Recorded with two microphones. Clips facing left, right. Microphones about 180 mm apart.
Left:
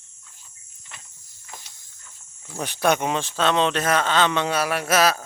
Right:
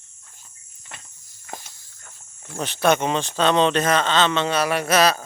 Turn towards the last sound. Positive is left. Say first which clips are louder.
# right 2 dB
turn(degrees=5)  # may be behind; listen again after turning